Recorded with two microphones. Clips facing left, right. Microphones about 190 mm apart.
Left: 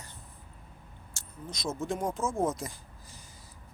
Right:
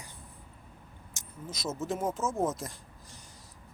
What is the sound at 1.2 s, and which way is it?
Vehicle, 15° right (ahead or behind).